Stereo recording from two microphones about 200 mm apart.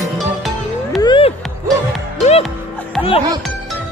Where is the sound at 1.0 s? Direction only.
25° left (ahead or behind).